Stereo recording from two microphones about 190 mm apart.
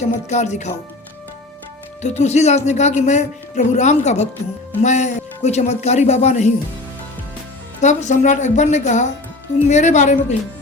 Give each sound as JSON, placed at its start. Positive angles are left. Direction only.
{"t": 0.1, "sound": "speech", "side_deg": 35}
{"t": 2.0, "sound": "speech", "side_deg": 35}
{"t": 7.8, "sound": "speech", "side_deg": 40}